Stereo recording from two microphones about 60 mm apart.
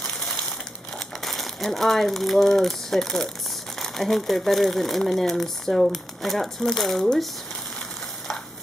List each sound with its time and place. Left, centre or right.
0.9 s speech: centre